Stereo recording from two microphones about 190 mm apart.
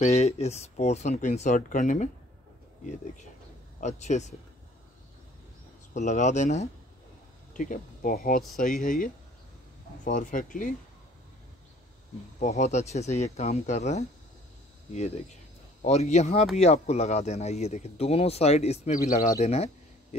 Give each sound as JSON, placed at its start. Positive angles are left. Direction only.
{"t": 0.0, "sound": "speech", "side_deg": 35}
{"t": 5.9, "sound": "speech", "side_deg": 40}
{"t": 12.4, "sound": "speech", "side_deg": 35}